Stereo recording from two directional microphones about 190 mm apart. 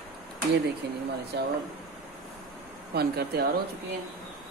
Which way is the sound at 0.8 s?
65° right (ahead or behind).